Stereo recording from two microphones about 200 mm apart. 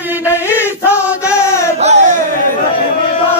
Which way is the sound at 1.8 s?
35° right (ahead or behind).